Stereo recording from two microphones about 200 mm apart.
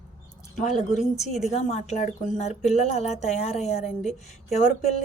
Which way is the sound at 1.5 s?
35° left (ahead or behind).